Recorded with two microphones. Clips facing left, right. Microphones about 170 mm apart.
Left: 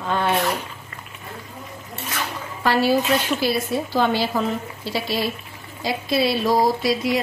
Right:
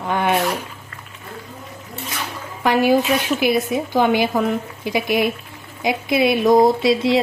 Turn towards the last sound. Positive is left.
turn(degrees=-25)  # may be behind; listen again after turning